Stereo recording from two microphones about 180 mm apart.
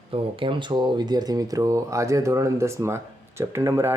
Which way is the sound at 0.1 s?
30° right (ahead or behind).